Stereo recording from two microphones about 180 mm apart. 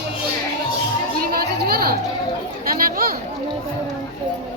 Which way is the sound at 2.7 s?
55° right (ahead or behind).